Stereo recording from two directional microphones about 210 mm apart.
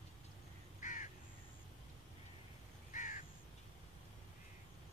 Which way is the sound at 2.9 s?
35° left (ahead or behind).